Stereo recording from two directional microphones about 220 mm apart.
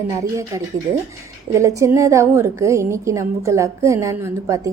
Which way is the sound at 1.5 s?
15° right (ahead or behind).